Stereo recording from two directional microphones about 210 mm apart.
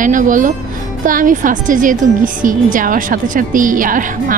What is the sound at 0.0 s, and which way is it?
A woman's voice, 40° right (ahead or behind).